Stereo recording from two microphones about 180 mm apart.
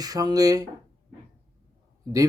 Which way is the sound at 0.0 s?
20° right (ahead or behind).